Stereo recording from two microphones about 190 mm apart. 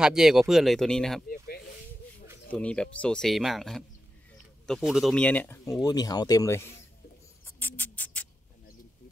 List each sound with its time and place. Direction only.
0.0 s speech: 5° right (ahead or behind)
2.5 s speech: 5° left (ahead or behind)
5.9 s speech: 20° left (ahead or behind)
7.4 s music: 10° left (ahead or behind)